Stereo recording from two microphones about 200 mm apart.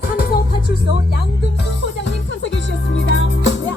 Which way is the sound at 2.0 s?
65° left (ahead or behind).